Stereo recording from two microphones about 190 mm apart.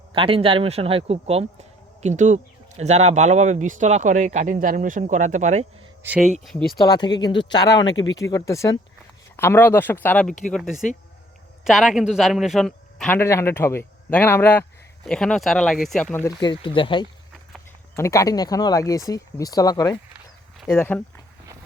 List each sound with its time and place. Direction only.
0.1 s a man's voice: 30° right (ahead or behind)
6.0 s speech: 5° right (ahead or behind)
6.7 s a man's voice: 20° left (ahead or behind); by 16.2 s 5° left (ahead or behind)
16.2 s a man's voice: 20° left (ahead or behind)